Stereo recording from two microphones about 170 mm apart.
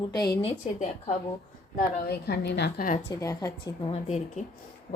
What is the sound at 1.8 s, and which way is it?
A woman's voice, 70° left (ahead or behind).